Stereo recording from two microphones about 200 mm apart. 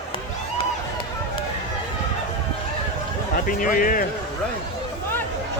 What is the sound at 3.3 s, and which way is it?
Speech, 45° left (ahead or behind).